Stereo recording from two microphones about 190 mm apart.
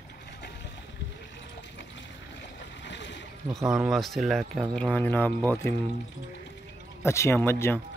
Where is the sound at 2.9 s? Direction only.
65° left (ahead or behind).